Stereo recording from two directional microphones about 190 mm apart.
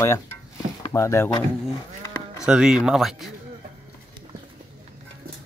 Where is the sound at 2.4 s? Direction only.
5° right (ahead or behind).